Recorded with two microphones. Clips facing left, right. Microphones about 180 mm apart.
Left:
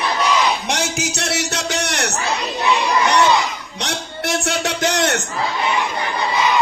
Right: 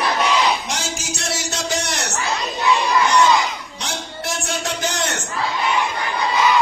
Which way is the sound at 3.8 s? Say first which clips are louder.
Left 4 dB; 70° left (ahead or behind).